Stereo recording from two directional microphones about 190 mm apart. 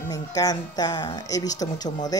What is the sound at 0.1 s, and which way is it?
Speech, 20° left (ahead or behind).